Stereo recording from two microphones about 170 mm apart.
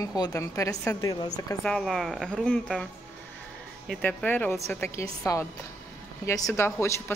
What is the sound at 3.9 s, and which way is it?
A woman's voice, 5° left (ahead or behind).